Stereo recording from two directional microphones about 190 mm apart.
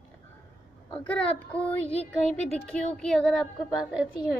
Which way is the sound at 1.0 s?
10° left (ahead or behind).